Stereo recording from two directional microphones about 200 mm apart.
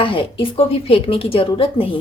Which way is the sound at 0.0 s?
25° left (ahead or behind).